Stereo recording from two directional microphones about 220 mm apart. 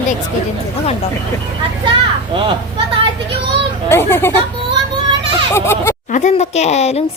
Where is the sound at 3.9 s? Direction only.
10° left (ahead or behind).